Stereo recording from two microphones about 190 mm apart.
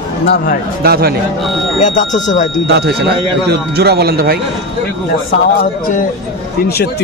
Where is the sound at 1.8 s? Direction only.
40° left (ahead or behind).